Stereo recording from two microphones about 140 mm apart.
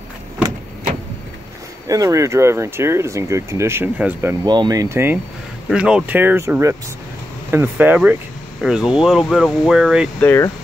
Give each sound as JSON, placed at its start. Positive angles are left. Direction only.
{"t": 1.9, "sound": "speech", "side_deg": -25}
{"t": 4.5, "sound": "speech", "side_deg": -30}
{"t": 5.7, "sound": "speech", "side_deg": -5}
{"t": 10.2, "sound": "speech", "side_deg": 20}